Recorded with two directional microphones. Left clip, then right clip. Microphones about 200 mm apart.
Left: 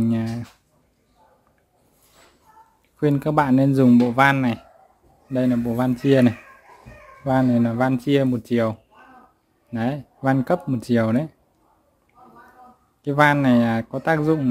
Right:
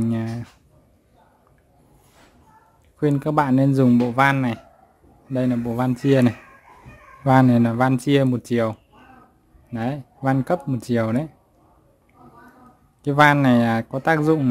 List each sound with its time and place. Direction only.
0.0 s a sound: 5° right (ahead or behind)
3.0 s speech: centre (ahead or behind)
7.2 s speech: 20° right (ahead or behind)
9.7 s speech: centre (ahead or behind)
13.0 s speech: 15° right (ahead or behind)